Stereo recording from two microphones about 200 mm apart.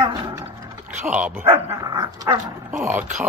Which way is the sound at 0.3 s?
10° right (ahead or behind).